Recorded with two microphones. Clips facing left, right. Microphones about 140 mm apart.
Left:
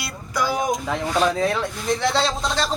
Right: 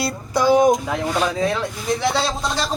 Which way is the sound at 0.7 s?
5° right (ahead or behind).